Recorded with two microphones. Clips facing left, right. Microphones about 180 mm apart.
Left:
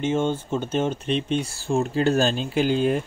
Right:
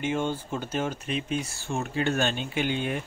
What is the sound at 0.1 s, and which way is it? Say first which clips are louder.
A man's voice: left 5 dB; 20° left (ahead or behind).